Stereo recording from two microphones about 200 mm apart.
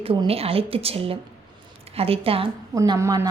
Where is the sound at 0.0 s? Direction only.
25° right (ahead or behind).